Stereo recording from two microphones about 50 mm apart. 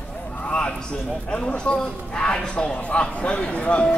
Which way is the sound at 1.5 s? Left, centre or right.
Centre.